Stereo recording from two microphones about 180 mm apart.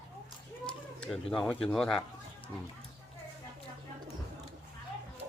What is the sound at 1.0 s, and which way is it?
Speech, centre (ahead or behind).